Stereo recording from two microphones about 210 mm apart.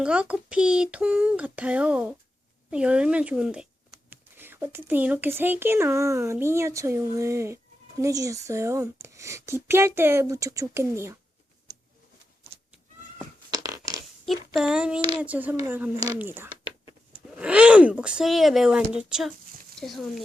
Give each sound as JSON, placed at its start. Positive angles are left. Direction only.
{"t": 0.0, "sound": "speech", "side_deg": -5}
{"t": 13.5, "sound": "a sound", "side_deg": -15}
{"t": 14.5, "sound": "speech", "side_deg": -5}